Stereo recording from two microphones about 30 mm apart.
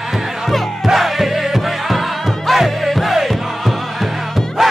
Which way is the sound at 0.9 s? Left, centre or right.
Centre.